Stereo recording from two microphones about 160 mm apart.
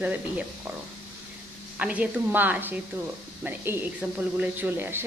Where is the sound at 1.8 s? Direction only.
10° right (ahead or behind).